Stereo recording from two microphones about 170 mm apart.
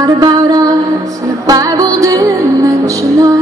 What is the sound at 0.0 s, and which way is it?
Mantra, 20° right (ahead or behind).